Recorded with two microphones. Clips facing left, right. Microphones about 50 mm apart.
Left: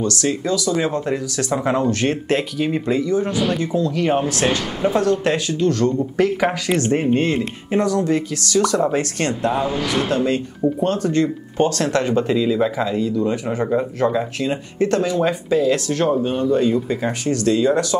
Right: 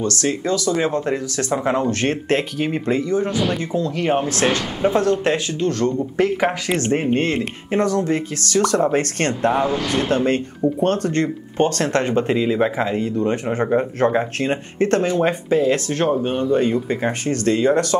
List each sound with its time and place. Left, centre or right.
0.0 s speech: right
9.4 s speech: right
16.1 s speech: centre
16.5 s speech: right